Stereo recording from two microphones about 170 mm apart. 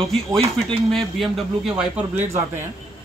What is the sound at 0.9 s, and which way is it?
A man's voice, centre (ahead or behind).